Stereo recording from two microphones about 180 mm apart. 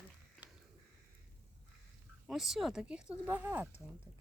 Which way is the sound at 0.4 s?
Centre (ahead or behind).